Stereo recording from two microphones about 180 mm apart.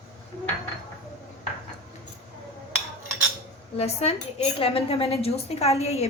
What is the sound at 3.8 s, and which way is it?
Speech, 35° left (ahead or behind).